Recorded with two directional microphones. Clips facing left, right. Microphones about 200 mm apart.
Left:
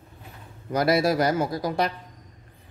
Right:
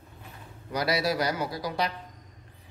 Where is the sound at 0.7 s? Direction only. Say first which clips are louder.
Left 6 dB; 50° left (ahead or behind).